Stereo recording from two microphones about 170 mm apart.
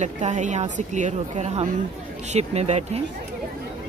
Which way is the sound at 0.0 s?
45° right (ahead or behind).